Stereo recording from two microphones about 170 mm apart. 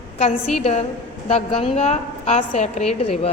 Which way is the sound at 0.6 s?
35° left (ahead or behind).